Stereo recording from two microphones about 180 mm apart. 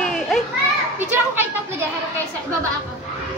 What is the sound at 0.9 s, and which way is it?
Speech, 10° right (ahead or behind).